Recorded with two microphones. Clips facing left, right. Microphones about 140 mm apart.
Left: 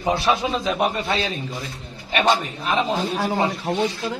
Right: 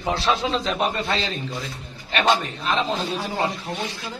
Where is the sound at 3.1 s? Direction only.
65° left (ahead or behind).